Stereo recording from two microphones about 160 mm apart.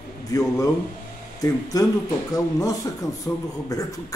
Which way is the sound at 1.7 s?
20° left (ahead or behind).